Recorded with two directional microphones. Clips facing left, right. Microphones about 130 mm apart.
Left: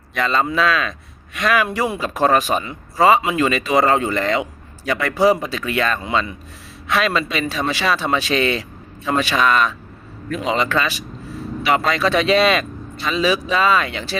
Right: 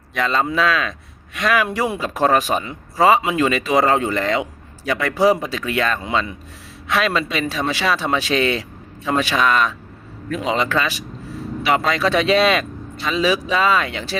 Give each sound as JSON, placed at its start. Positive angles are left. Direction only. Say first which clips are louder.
{"t": 0.2, "sound": "a man's voice", "louder": "even", "side_deg": -10}
{"t": 2.6, "sound": "a man's voice", "louder": "left 1 dB", "side_deg": -15}